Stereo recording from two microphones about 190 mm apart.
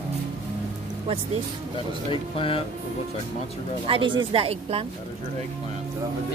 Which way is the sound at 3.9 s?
25° right (ahead or behind).